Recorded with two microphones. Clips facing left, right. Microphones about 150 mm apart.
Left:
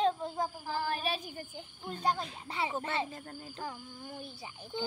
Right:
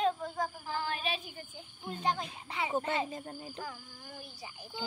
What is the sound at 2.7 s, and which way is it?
Cricket, 25° right (ahead or behind).